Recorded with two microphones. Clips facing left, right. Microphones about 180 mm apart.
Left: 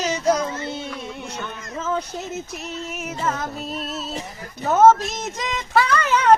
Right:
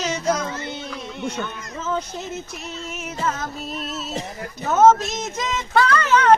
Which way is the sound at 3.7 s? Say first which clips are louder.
Left 1 dB; 35° left (ahead or behind).